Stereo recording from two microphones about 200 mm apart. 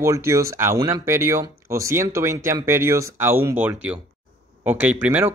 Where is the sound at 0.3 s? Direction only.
15° right (ahead or behind).